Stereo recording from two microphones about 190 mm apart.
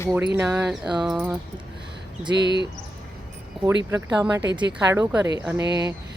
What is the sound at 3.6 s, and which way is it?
Speech, 15° right (ahead or behind).